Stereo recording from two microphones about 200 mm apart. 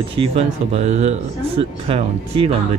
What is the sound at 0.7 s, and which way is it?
Speech, 30° right (ahead or behind).